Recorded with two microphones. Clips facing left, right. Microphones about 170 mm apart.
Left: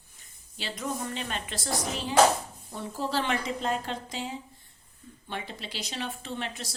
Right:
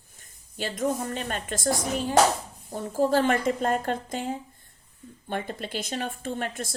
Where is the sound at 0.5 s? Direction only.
50° right (ahead or behind).